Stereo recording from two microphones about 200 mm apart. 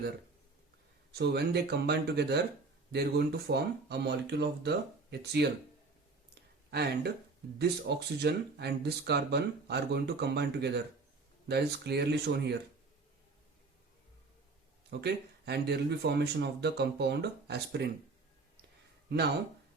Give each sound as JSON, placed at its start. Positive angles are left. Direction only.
{"t": 1.1, "sound": "speech", "side_deg": -55}
{"t": 6.7, "sound": "speech", "side_deg": -55}
{"t": 14.8, "sound": "speech", "side_deg": -55}